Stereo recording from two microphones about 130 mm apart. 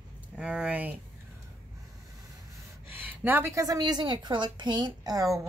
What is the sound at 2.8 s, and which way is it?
A woman's voice, 15° right (ahead or behind).